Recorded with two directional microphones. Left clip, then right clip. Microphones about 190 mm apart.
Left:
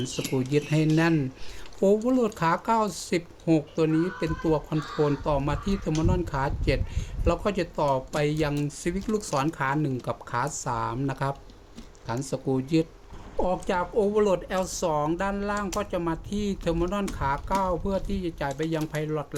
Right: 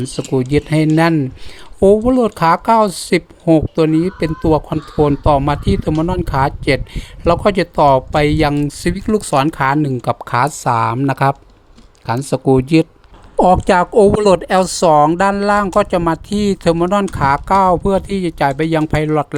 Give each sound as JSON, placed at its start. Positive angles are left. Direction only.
{"t": 0.2, "sound": "speech", "side_deg": -40}